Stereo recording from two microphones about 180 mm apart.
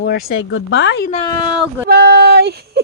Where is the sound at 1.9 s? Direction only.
65° right (ahead or behind).